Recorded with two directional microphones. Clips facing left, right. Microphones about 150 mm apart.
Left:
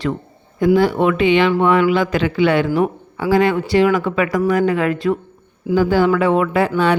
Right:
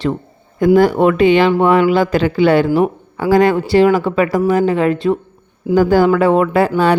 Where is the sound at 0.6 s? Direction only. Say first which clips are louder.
Right 3 dB; 45° right (ahead or behind); by 5.2 s 25° right (ahead or behind).